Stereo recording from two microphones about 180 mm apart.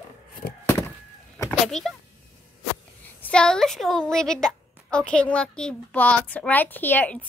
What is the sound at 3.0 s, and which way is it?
A woman's voice, 5° left (ahead or behind).